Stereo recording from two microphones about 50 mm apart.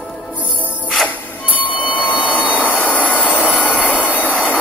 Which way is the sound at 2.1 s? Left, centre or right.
Right.